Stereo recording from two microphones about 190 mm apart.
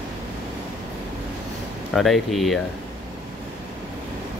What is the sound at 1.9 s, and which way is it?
Speech, centre (ahead or behind).